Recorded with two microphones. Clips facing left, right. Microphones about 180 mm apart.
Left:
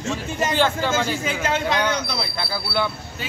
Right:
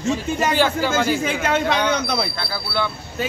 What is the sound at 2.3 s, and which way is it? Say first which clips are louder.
Speech: even; 15° left (ahead or behind).